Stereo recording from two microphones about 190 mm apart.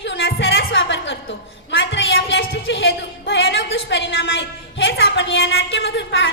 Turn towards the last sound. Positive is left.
turn(degrees=70)  # may be behind; listen again after turning